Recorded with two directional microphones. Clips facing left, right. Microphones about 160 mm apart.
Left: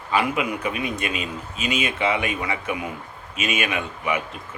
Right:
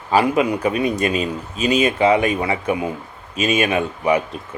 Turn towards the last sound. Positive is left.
turn(degrees=-35)  # may be behind; listen again after turning